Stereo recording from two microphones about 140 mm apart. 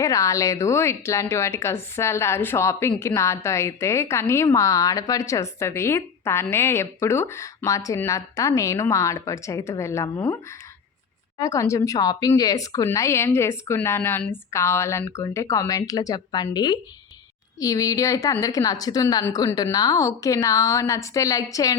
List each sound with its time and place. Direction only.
0.0 s a woman's voice: 25° left (ahead or behind)
11.3 s a woman's voice: 20° left (ahead or behind)